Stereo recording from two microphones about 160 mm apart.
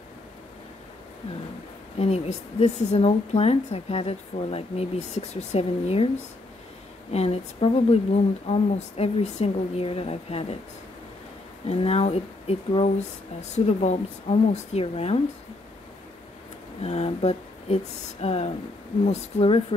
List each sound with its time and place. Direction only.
2.0 s a woman's voice: 40° left (ahead or behind)
7.1 s a woman's voice: 40° left (ahead or behind)
11.6 s a woman's voice: 40° left (ahead or behind)
16.8 s a woman's voice: 40° left (ahead or behind)